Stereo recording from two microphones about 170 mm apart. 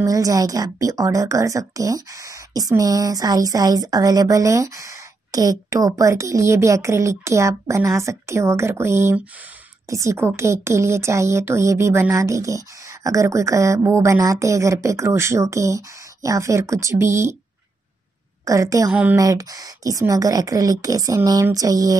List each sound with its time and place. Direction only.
0.0 s a woman's voice: 20° right (ahead or behind)
18.4 s a woman's voice: 20° right (ahead or behind)
18.9 s a woman's voice: 5° right (ahead or behind)
19.1 s a woman's voice: 20° right (ahead or behind)